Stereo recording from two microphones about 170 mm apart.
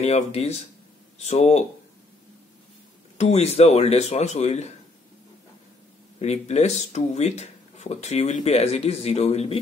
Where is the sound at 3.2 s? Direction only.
40° left (ahead or behind).